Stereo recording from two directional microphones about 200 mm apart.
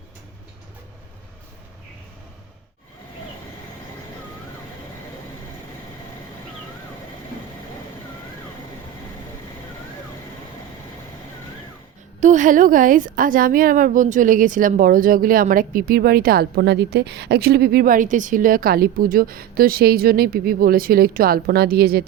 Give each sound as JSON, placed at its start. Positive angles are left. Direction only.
{"t": 12.2, "sound": "a woman's voice", "side_deg": -40}